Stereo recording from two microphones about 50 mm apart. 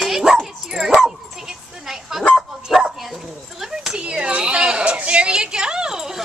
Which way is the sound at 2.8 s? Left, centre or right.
Centre.